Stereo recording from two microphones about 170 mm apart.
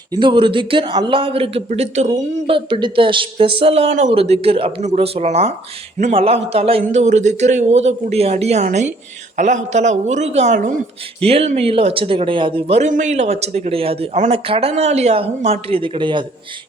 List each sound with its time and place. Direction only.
0.1 s speech: 30° right (ahead or behind)
2.6 s speech: 30° right (ahead or behind)